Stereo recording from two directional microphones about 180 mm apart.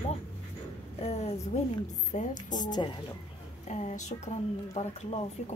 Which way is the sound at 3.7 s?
40° left (ahead or behind).